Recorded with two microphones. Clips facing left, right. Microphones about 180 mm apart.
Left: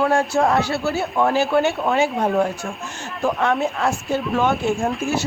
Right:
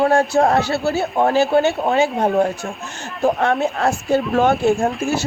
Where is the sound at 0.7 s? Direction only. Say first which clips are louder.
Right 3 dB; 30° right (ahead or behind).